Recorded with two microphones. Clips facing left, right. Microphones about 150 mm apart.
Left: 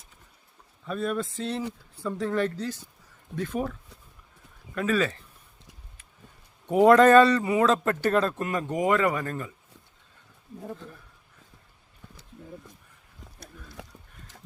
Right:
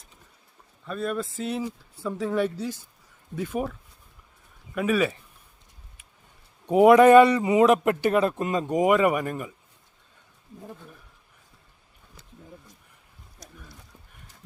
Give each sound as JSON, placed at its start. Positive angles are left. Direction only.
{"t": 0.9, "sound": "a man's voice", "side_deg": 0}
{"t": 6.7, "sound": "a man's voice", "side_deg": -15}
{"t": 13.8, "sound": "a sound", "side_deg": 85}